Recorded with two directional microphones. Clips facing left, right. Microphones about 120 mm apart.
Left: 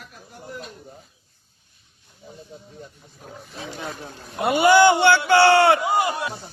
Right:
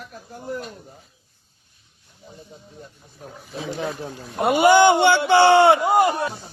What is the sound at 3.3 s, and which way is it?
Speech, centre (ahead or behind).